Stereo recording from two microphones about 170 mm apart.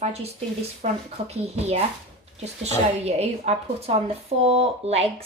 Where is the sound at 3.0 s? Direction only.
40° right (ahead or behind).